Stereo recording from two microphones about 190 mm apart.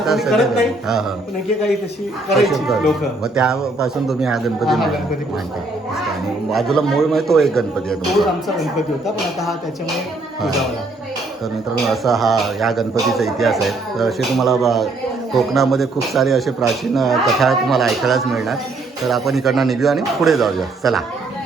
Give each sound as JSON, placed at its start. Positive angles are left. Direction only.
{"t": 0.0, "sound": "speech", "side_deg": 0}
{"t": 2.3, "sound": "speech", "side_deg": 0}
{"t": 6.5, "sound": "speech", "side_deg": 0}
{"t": 11.9, "sound": "speech", "side_deg": 0}